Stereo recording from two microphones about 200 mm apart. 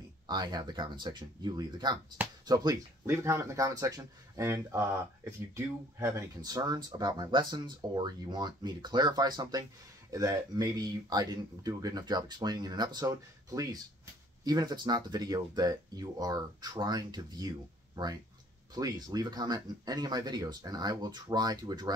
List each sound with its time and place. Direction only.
0.3 s speech: 20° right (ahead or behind)